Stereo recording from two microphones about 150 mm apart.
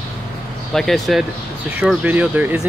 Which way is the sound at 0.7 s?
Centre (ahead or behind).